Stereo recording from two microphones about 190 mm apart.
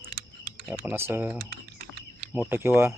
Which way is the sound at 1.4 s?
50° right (ahead or behind).